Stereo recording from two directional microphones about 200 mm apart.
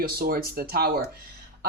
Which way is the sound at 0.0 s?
45° right (ahead or behind).